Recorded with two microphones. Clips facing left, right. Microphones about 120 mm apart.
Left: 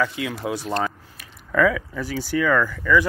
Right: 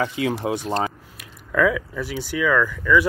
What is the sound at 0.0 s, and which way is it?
Speech, 30° right (ahead or behind).